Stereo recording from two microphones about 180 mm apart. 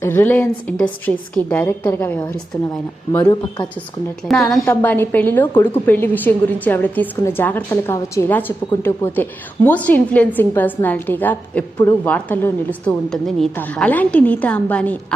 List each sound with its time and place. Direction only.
0.0 s a woman's voice: 10° left (ahead or behind)
4.3 s a woman's voice: centre (ahead or behind)